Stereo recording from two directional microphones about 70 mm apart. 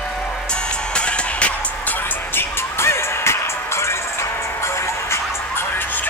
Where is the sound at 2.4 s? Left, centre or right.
Left.